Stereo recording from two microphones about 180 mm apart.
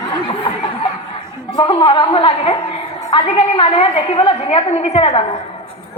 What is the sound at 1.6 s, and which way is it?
A woman's voice, 30° left (ahead or behind).